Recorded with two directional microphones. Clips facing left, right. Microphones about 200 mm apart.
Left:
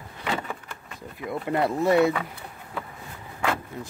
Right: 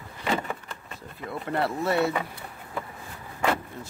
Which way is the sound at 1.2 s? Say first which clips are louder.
Left 3 dB; 15° left (ahead or behind).